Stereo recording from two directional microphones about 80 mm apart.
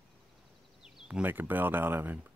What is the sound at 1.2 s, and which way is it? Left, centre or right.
Speech, right.